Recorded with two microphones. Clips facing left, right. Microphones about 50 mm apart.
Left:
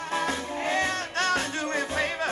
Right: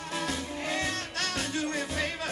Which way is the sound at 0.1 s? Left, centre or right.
Left.